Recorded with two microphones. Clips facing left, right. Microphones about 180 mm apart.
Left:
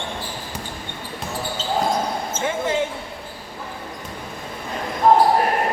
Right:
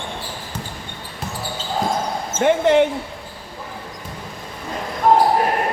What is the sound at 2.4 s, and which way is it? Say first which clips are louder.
Speech: right 9 dB; 65° right (ahead or behind).